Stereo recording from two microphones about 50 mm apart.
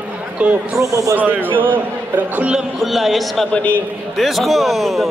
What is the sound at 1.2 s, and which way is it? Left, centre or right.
A man's voice, right.